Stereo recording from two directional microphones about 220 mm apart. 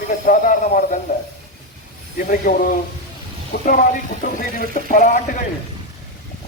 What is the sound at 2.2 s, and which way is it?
Speech, 40° left (ahead or behind).